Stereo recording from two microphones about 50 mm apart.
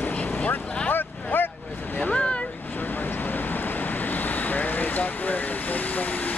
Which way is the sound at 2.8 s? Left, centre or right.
Left.